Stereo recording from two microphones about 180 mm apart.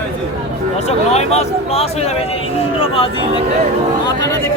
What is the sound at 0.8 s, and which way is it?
Speech, 35° left (ahead or behind).